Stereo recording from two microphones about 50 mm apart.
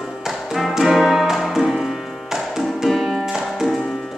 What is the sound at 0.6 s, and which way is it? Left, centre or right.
Music, centre.